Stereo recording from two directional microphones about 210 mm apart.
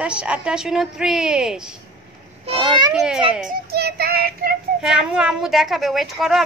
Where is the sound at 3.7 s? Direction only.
50° right (ahead or behind).